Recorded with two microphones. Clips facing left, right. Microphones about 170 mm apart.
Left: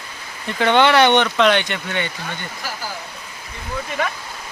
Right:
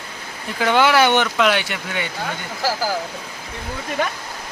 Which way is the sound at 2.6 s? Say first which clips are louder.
Right 8 dB; 90° right.